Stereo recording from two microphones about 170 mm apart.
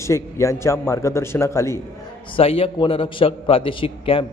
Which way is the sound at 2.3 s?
35° left (ahead or behind).